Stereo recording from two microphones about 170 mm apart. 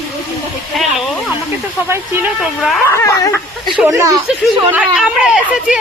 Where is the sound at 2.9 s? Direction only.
15° left (ahead or behind).